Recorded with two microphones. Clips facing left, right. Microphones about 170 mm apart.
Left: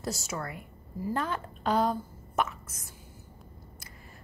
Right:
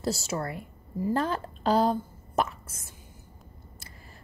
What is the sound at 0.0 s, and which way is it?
A woman's voice, 30° right (ahead or behind).